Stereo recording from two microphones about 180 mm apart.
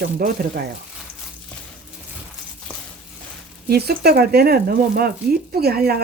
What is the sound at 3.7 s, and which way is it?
Speech, 60° right (ahead or behind).